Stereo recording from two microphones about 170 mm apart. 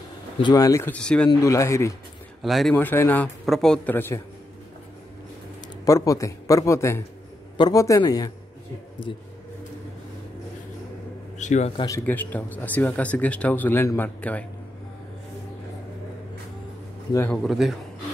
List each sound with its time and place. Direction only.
0.4 s speech: 25° left (ahead or behind); by 1.3 s 5° left (ahead or behind)
1.3 s speech: 20° left (ahead or behind)
2.4 s a man's voice: centre (ahead or behind)
2.7 s speech: 10° left (ahead or behind)
5.9 s a man's voice: 20° left (ahead or behind)
11.3 s speech: 45° left (ahead or behind)
12.1 s speech: 10° left (ahead or behind)
17.3 s a man's voice: centre (ahead or behind)